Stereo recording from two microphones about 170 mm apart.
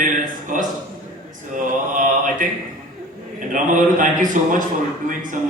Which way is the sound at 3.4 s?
50° right (ahead or behind).